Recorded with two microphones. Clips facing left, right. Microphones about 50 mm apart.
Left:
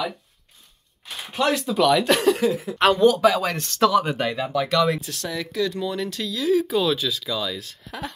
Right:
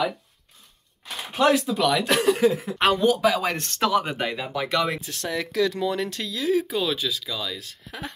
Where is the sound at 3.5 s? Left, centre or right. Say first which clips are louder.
Left 1 dB; right.